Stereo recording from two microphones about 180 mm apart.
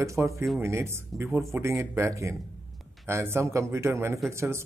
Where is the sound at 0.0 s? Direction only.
15° right (ahead or behind).